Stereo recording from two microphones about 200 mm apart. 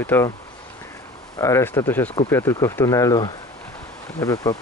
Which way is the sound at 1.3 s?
15° left (ahead or behind).